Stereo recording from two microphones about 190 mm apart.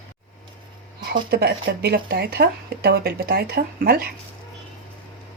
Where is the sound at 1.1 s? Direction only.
55° right (ahead or behind).